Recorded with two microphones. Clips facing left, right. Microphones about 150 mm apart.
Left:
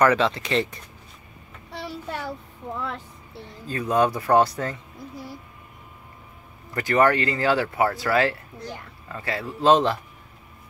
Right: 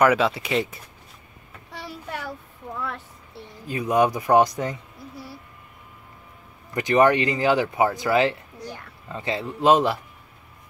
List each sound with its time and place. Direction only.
0.0 s speech: 10° right (ahead or behind)
3.6 s speech: 15° right (ahead or behind)
6.7 s a man's voice: 15° right (ahead or behind)